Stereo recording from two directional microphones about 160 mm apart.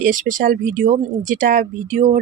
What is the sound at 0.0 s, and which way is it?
Speech, 55° right (ahead or behind).